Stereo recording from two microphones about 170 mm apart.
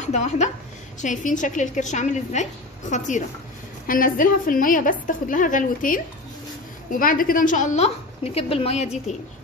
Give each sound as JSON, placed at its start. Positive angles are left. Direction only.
{"t": 0.0, "sound": "a woman's voice", "side_deg": 45}